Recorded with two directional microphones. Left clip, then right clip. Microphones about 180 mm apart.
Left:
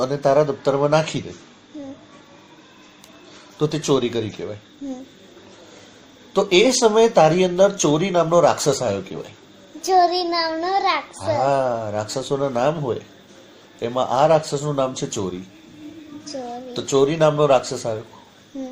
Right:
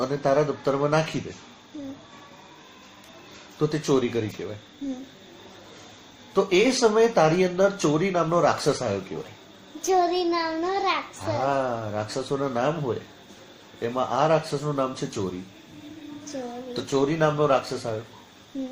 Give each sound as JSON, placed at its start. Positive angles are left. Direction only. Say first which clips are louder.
{"t": 0.0, "sound": "speech", "louder": "left 5 dB", "side_deg": 30}
{"t": 3.6, "sound": "speech", "louder": "left 4 dB", "side_deg": 30}
{"t": 6.3, "sound": "speech", "louder": "left 5 dB", "side_deg": 35}
{"t": 9.8, "sound": "child singing", "louder": "left 5 dB", "side_deg": 0}
{"t": 11.4, "sound": "speech", "louder": "left 4 dB", "side_deg": 35}
{"t": 16.7, "sound": "speech", "louder": "left 6 dB", "side_deg": 35}